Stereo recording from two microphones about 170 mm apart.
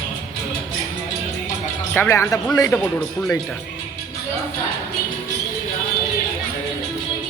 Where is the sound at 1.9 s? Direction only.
15° left (ahead or behind).